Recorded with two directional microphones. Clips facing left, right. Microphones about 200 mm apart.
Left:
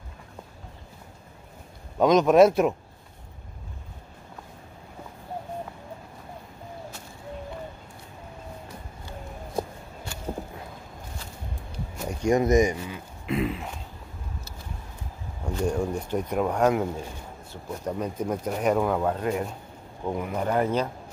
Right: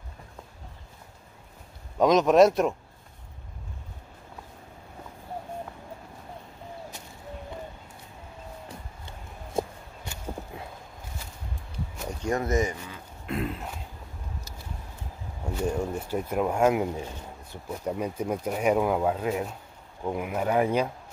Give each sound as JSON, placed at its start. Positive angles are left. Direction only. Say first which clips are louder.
{"t": 2.0, "sound": "speech", "louder": "left 1 dB", "side_deg": 0}
{"t": 9.0, "sound": "a sound", "louder": "left 5 dB", "side_deg": -25}
{"t": 12.0, "sound": "speech", "louder": "left 6 dB", "side_deg": 10}
{"t": 13.3, "sound": "throat clearing", "louder": "left 4 dB", "side_deg": 0}
{"t": 15.4, "sound": "a sound", "louder": "left 2 dB", "side_deg": -5}
{"t": 15.9, "sound": "speech", "louder": "left 2 dB", "side_deg": -5}